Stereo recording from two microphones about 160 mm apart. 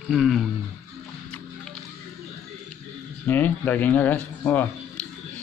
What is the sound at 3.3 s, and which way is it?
A man's voice, 10° left (ahead or behind).